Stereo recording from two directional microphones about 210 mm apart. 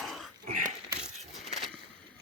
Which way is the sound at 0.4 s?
40° right (ahead or behind).